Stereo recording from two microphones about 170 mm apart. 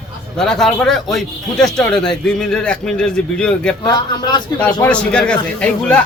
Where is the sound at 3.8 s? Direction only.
25° left (ahead or behind).